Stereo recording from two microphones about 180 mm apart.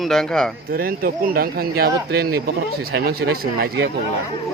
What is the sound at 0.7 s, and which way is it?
Speech, 55° right (ahead or behind).